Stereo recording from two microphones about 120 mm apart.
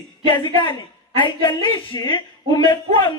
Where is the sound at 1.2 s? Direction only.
45° left (ahead or behind).